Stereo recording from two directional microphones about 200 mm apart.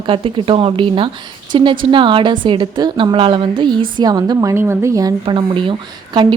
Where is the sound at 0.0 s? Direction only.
25° right (ahead or behind).